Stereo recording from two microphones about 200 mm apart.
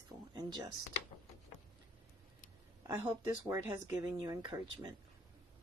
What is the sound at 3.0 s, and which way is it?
Speech, 15° right (ahead or behind).